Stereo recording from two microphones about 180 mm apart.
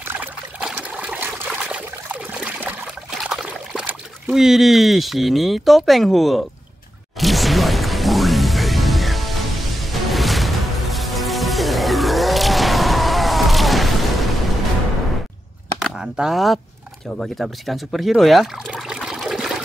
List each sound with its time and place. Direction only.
0.0 s trickle: 10° right (ahead or behind)
7.2 s music: centre (ahead or behind)
15.8 s a sound: 5° right (ahead or behind)
17.2 s speech: centre (ahead or behind)